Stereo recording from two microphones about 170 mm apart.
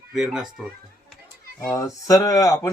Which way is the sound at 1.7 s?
20° left (ahead or behind).